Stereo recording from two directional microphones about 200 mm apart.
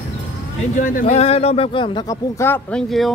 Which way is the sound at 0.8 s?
40° left (ahead or behind).